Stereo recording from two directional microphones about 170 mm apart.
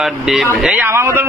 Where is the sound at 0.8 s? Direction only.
15° right (ahead or behind).